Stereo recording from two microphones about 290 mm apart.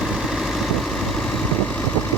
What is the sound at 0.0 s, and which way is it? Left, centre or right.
Vehicle, centre.